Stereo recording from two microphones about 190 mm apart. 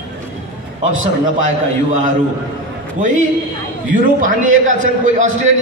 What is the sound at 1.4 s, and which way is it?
A man's voice, 40° right (ahead or behind).